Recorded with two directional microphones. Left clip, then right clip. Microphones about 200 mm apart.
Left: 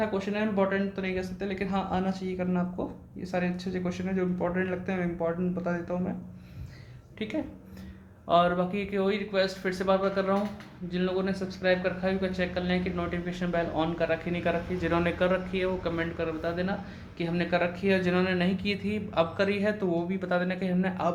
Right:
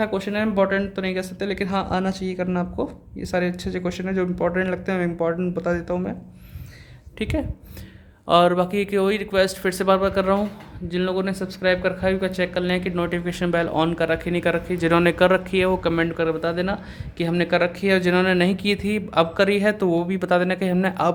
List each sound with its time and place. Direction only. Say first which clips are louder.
0.0 s speech: right 6 dB; 60° right (ahead or behind)
7.2 s speech: right 7 dB; 55° right (ahead or behind)